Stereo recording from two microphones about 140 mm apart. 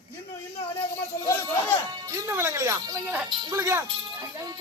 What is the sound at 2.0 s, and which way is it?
Speech, 20° right (ahead or behind).